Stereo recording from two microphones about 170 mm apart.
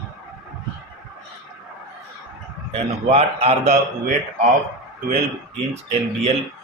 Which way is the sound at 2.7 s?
40° right (ahead or behind).